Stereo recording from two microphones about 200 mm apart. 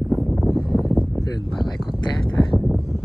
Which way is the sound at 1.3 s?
20° left (ahead or behind).